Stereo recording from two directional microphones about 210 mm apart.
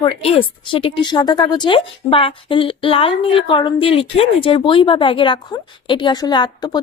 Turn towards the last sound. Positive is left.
turn(degrees=20)  # may be behind; listen again after turning